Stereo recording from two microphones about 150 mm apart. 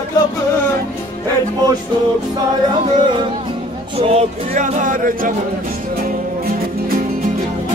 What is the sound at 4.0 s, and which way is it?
Speech, 45° right (ahead or behind).